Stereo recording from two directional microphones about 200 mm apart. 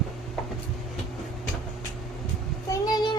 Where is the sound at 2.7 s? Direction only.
20° left (ahead or behind).